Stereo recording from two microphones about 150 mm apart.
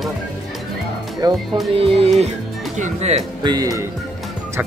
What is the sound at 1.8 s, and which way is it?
Music, 40° right (ahead or behind).